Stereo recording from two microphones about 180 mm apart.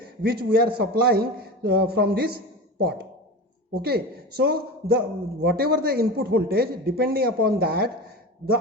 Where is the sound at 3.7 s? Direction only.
60° right (ahead or behind).